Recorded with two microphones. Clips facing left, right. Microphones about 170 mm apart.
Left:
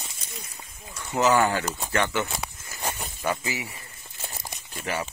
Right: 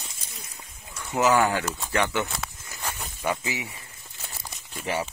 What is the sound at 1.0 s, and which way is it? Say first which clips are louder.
Speech: even; 10° right (ahead or behind).